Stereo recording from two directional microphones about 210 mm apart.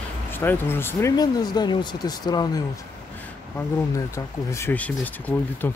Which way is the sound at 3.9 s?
15° left (ahead or behind).